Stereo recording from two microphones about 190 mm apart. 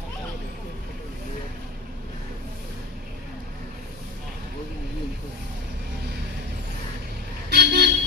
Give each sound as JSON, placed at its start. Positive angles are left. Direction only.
{"t": 7.4, "sound": "vehicle", "side_deg": -55}